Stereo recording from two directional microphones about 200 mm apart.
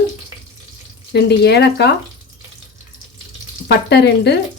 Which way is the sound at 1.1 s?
55° left (ahead or behind).